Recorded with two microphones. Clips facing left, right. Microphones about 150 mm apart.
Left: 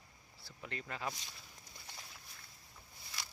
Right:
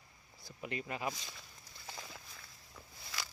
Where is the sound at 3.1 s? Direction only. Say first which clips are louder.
Right 5 dB; 90° right.